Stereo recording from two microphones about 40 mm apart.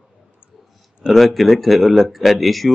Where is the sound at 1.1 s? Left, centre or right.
Centre.